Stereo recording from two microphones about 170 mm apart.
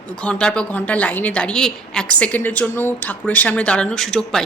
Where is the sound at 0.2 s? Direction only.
5° left (ahead or behind).